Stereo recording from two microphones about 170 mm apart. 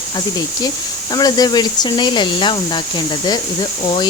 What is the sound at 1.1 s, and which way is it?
Speech, 25° left (ahead or behind).